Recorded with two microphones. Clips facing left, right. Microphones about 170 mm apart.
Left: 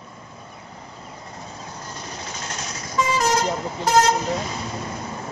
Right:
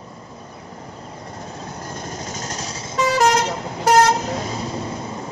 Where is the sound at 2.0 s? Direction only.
45° right (ahead or behind); by 3.0 s 25° right (ahead or behind).